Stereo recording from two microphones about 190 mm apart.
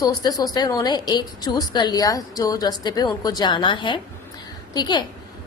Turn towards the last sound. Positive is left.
turn(degrees=20)  # may be behind; listen again after turning